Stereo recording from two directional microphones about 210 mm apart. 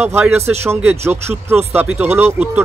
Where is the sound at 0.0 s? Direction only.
10° right (ahead or behind).